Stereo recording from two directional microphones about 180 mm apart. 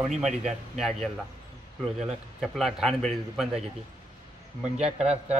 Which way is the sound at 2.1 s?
Centre (ahead or behind).